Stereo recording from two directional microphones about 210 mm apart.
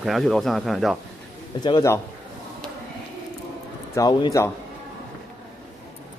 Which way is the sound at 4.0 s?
20° left (ahead or behind).